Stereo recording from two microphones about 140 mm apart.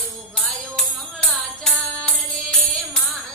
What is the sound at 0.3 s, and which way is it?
Music, centre (ahead or behind).